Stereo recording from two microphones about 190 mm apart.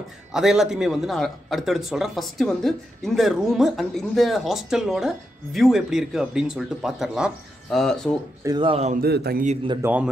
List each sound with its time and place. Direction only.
0.3 s speech: 5° right (ahead or behind)
8.5 s speech: 25° right (ahead or behind)
9.0 s a man's voice: 55° right (ahead or behind)
9.8 s a man's voice: 15° right (ahead or behind)